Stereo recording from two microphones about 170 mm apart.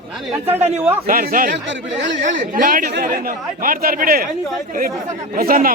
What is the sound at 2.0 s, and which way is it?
Speech, 90° right.